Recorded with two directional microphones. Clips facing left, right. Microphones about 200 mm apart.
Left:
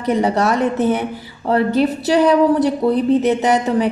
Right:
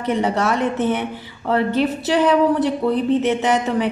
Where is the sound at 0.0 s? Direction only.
40° left (ahead or behind).